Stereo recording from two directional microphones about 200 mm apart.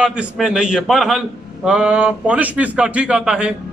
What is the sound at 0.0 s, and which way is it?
A man's voice, 5° right (ahead or behind).